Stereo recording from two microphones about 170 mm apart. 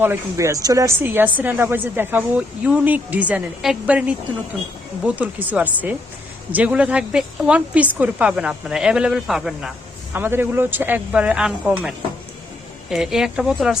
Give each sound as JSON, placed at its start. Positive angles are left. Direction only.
{"t": 0.0, "sound": "speech", "side_deg": -15}